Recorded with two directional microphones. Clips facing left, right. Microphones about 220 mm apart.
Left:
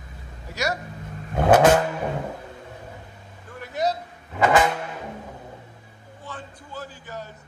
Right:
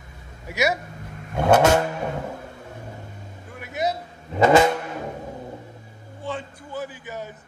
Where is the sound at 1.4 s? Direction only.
25° right (ahead or behind).